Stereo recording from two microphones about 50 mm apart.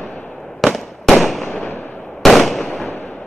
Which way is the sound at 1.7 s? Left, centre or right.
Left.